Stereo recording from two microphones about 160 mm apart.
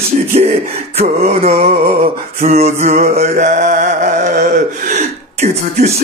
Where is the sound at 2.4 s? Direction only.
40° right (ahead or behind).